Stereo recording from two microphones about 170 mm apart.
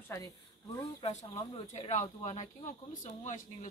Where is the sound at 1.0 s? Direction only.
35° left (ahead or behind).